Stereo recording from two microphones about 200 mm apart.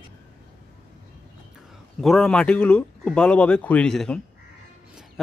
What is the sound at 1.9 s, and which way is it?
Speech, centre (ahead or behind).